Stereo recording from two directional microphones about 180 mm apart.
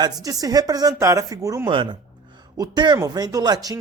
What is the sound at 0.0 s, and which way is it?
Speech, 20° right (ahead or behind).